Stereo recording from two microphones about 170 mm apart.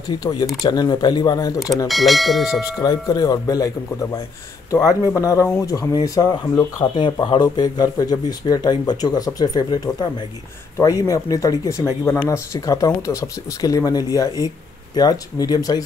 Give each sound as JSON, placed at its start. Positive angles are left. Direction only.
{"t": 0.2, "sound": "speech", "side_deg": 20}
{"t": 1.9, "sound": "bell", "side_deg": 0}
{"t": 2.6, "sound": "speech", "side_deg": 20}
{"t": 4.8, "sound": "speech", "side_deg": 20}